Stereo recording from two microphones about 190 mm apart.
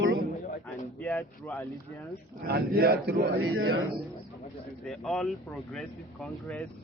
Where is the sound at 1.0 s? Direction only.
10° left (ahead or behind).